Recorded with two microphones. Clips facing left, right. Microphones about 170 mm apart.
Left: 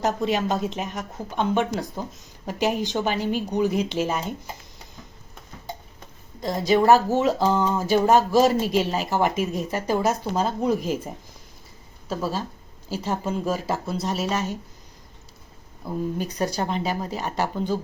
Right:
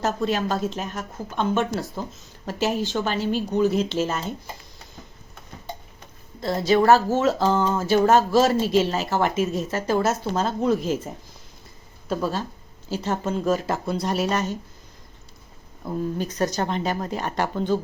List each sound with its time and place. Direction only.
0.0 s a woman's voice: 15° left (ahead or behind)
6.4 s a woman's voice: 15° left (ahead or behind)
16.1 s a woman's voice: 10° left (ahead or behind)